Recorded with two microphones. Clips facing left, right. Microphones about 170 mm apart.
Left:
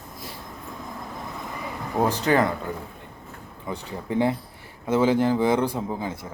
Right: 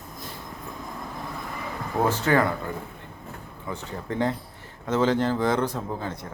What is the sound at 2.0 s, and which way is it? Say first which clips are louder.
Speech: left 1 dB; 15° left (ahead or behind).